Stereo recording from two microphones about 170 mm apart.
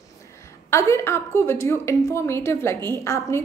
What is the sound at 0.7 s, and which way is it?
A woman's voice, 15° left (ahead or behind).